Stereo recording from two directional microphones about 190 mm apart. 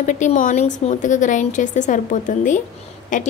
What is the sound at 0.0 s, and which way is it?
A woman's voice, 40° left (ahead or behind).